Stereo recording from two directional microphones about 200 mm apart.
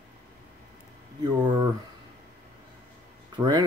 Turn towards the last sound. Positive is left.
turn(degrees=-20)  # may be behind; listen again after turning